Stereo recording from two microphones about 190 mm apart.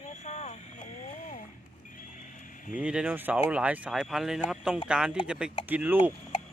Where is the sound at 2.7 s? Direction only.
5° right (ahead or behind).